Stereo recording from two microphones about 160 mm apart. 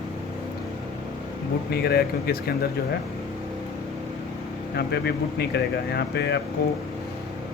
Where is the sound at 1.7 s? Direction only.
80° left.